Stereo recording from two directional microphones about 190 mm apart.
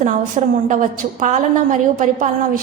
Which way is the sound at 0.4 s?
35° right (ahead or behind).